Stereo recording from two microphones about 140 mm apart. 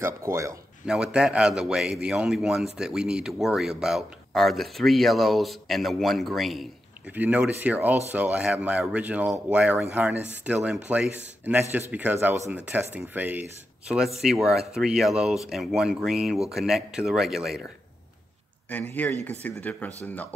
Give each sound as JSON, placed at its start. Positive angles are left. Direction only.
{"t": 0.0, "sound": "speech", "side_deg": -20}
{"t": 0.8, "sound": "speech", "side_deg": -5}
{"t": 7.1, "sound": "speech", "side_deg": -10}
{"t": 18.7, "sound": "speech", "side_deg": 15}